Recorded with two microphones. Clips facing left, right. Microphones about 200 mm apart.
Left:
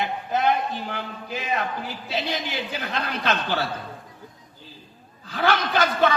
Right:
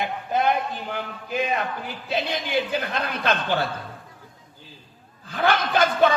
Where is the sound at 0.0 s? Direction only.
55° right (ahead or behind).